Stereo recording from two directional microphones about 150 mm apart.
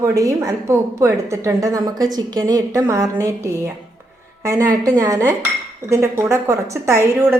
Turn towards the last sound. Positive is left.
turn(degrees=-15)  # may be behind; listen again after turning